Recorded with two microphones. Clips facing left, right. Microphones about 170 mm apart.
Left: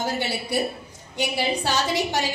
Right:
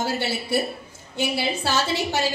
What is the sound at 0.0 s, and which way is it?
A woman's voice, 15° left (ahead or behind).